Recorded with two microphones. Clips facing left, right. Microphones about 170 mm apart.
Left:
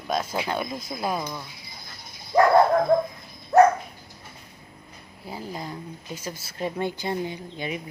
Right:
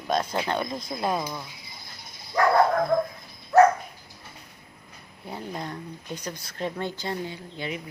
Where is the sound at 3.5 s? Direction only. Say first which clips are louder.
Left 1 dB; 20° left (ahead or behind).